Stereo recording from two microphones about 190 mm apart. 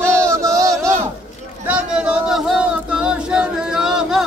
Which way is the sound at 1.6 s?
5° right (ahead or behind).